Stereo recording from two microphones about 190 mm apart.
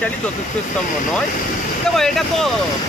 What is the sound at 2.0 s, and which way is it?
Speech, centre (ahead or behind).